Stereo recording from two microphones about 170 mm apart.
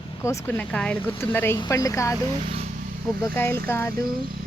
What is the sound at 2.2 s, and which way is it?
Speech, 30° right (ahead or behind).